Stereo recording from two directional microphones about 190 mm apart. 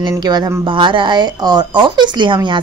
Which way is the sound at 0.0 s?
20° right (ahead or behind).